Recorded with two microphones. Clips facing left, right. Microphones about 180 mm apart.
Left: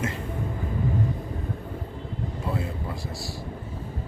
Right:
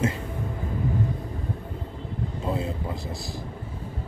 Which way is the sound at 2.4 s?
20° right (ahead or behind).